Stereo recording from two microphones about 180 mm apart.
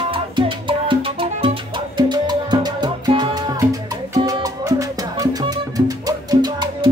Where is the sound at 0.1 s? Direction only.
30° right (ahead or behind).